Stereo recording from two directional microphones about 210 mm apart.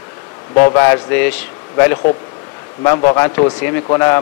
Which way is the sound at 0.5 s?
15° left (ahead or behind).